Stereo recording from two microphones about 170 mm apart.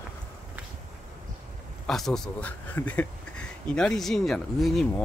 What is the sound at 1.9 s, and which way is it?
Speech, centre (ahead or behind).